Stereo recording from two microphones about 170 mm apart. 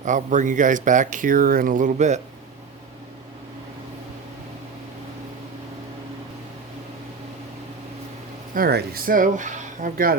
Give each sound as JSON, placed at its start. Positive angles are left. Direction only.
{"t": 0.0, "sound": "speech", "side_deg": -50}
{"t": 8.5, "sound": "speech", "side_deg": -60}